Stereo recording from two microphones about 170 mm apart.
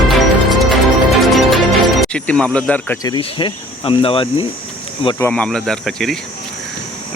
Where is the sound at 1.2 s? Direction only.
Centre (ahead or behind).